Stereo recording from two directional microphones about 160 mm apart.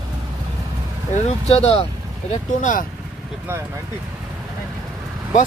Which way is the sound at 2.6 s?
55° left (ahead or behind).